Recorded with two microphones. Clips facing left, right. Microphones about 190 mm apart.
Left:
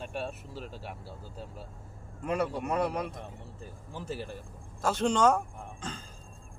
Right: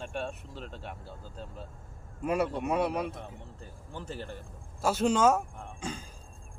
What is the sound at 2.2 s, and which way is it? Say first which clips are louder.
Speech: right 2 dB; 5° right (ahead or behind).